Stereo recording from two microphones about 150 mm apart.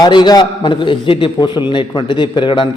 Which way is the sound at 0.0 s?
30° left (ahead or behind).